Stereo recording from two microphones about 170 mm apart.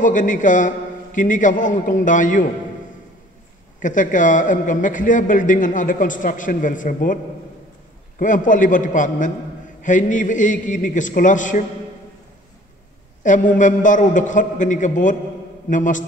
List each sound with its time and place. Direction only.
0.0 s a man's voice: 50° left (ahead or behind)
3.8 s a man's voice: 50° left (ahead or behind)
8.2 s a man's voice: 50° left (ahead or behind)
13.2 s a man's voice: 50° left (ahead or behind)